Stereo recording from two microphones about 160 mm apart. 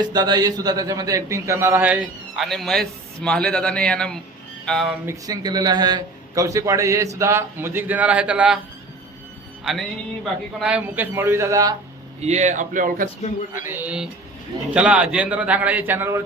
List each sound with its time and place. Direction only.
0.0 s a man's voice: 25° right (ahead or behind); by 4.2 s 5° left (ahead or behind)
4.6 s music: 5° left (ahead or behind)
5.2 s a man's voice: 25° right (ahead or behind); by 8.5 s 5° right (ahead or behind)
10.6 s a man's voice: 5° right (ahead or behind)
12.2 s speech: 45° right (ahead or behind)
13.5 s a man's voice: 15° right (ahead or behind)